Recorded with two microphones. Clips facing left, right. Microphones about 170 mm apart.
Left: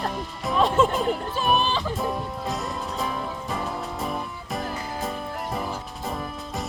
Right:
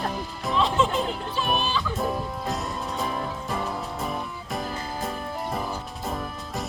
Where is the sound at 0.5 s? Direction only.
50° left (ahead or behind).